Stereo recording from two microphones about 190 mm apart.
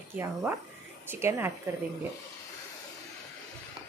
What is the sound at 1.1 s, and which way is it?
Speech, 10° right (ahead or behind).